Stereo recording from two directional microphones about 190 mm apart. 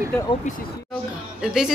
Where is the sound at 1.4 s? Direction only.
Centre (ahead or behind).